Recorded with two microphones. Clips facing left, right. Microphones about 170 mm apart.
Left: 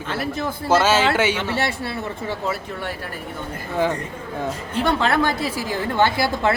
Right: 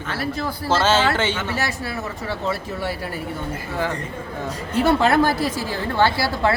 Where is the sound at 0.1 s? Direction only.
20° left (ahead or behind).